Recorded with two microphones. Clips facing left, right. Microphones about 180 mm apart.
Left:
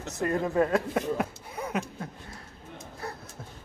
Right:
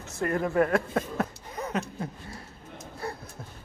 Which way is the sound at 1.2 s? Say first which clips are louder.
Right 1 dB; 10° left (ahead or behind).